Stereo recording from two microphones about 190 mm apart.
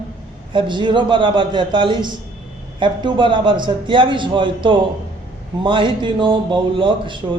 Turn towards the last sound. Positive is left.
turn(degrees=-25)  # may be behind; listen again after turning